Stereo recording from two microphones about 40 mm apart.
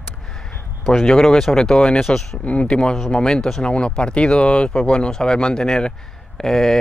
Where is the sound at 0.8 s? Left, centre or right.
Centre.